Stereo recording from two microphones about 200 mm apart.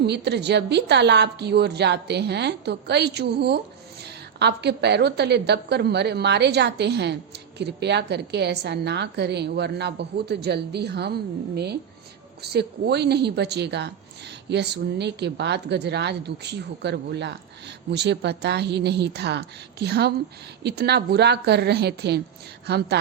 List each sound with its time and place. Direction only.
0.0 s a woman's voice: 55° right (ahead or behind)